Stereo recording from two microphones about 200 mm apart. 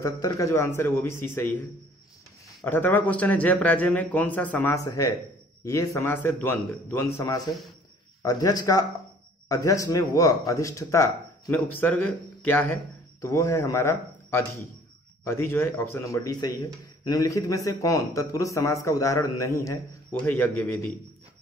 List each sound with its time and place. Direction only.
0.0 s a man's voice: 15° left (ahead or behind)
2.6 s a man's voice: 10° left (ahead or behind)